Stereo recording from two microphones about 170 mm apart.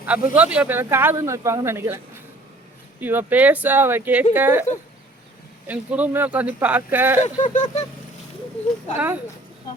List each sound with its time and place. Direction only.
0.0 s a man's voice: 10° right (ahead or behind)
3.0 s a man's voice: 10° right (ahead or behind)
5.6 s a man's voice: 10° right (ahead or behind)
7.4 s a sound: 45° left (ahead or behind)
9.0 s a man's voice: 10° right (ahead or behind)